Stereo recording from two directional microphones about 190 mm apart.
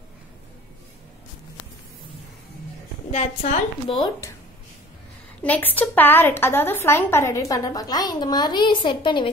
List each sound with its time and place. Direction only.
3.1 s a woman's voice: 40° left (ahead or behind)
3.9 s speech: 20° left (ahead or behind)
5.4 s a woman's voice: 10° left (ahead or behind); by 9.3 s 25° left (ahead or behind)